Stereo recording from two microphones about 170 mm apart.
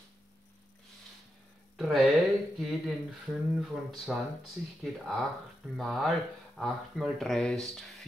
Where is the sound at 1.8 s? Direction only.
Centre (ahead or behind).